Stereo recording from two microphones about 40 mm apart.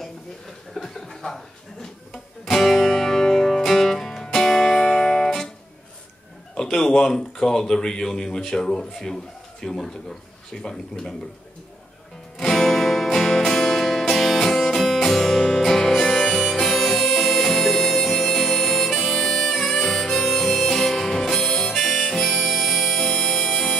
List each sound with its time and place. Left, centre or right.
0.7 s chuckle: centre
2.4 s music: centre
6.5 s speech: centre
12.4 s music: centre
19.7 s harmonica: centre
22.9 s music: centre